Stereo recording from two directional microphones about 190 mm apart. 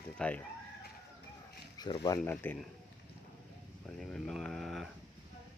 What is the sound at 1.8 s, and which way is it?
Speech, 20° left (ahead or behind).